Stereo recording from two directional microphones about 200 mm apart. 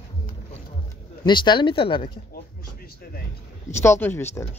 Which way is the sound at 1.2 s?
25° left (ahead or behind).